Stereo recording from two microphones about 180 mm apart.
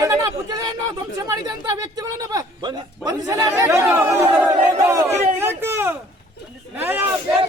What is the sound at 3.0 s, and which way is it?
Speech, 20° right (ahead or behind).